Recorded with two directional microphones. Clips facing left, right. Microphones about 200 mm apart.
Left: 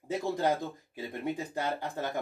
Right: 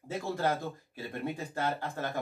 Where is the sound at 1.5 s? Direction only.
15° left (ahead or behind).